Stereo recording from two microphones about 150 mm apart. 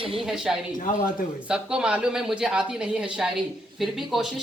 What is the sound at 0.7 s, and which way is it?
Speech, 60° left (ahead or behind).